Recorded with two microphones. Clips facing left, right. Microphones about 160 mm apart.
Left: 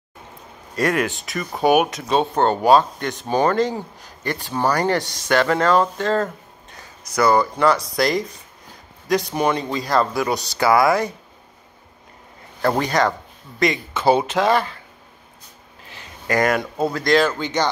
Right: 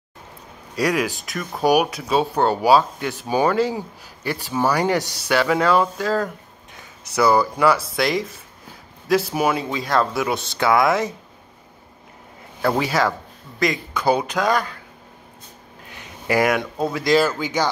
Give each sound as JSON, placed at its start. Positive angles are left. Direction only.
{"t": 0.7, "sound": "speech", "side_deg": -5}
{"t": 12.6, "sound": "speech", "side_deg": -5}
{"t": 16.3, "sound": "speech", "side_deg": -5}